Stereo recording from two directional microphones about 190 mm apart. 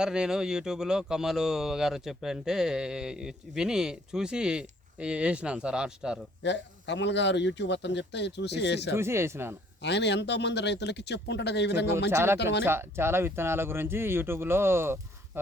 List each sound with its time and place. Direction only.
0.0 s speech: 5° right (ahead or behind)
6.4 s a man's voice: 70° left (ahead or behind)
8.9 s speech: 15° right (ahead or behind)
9.8 s a man's voice: 65° left (ahead or behind)
12.1 s speech: 15° right (ahead or behind)
12.4 s a man's voice: 65° left (ahead or behind)
12.6 s speech: 10° right (ahead or behind)